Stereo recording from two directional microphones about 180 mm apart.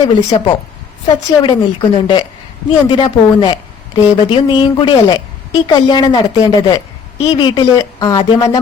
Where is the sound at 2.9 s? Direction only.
25° left (ahead or behind).